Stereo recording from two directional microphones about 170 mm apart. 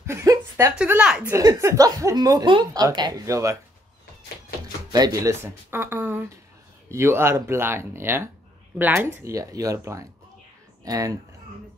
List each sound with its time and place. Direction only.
0.0 s speech: 15° right (ahead or behind)
0.7 s speech: 10° right (ahead or behind)
1.3 s speech: 20° right (ahead or behind)
4.9 s speech: 20° right (ahead or behind)